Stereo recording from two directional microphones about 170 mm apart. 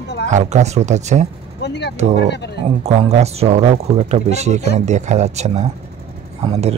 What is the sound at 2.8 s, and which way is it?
Speech, 40° right (ahead or behind).